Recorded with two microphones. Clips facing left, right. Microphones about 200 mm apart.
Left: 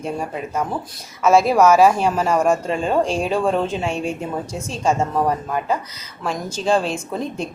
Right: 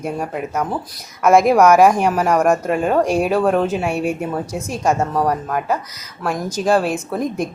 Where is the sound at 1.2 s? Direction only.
15° right (ahead or behind).